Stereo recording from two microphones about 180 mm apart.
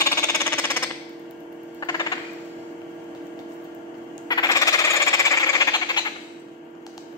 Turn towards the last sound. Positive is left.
turn(degrees=25)  # may be behind; listen again after turning